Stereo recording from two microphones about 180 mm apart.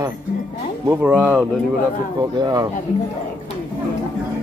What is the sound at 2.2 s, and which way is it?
Speech, 20° right (ahead or behind).